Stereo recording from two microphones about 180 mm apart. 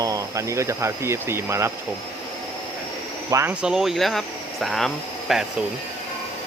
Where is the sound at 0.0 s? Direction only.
20° right (ahead or behind).